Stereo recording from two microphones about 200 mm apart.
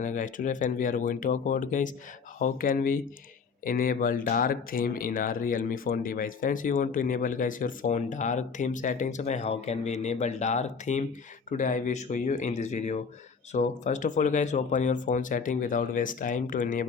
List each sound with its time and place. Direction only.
0.0 s speech: 40° left (ahead or behind)